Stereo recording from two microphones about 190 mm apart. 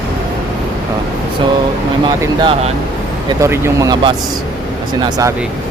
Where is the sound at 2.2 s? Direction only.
20° right (ahead or behind).